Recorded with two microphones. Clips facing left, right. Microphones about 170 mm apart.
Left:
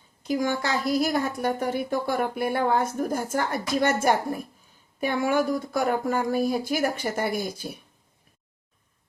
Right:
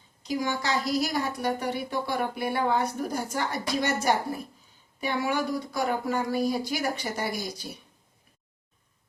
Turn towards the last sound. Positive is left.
turn(degrees=55)  # may be behind; listen again after turning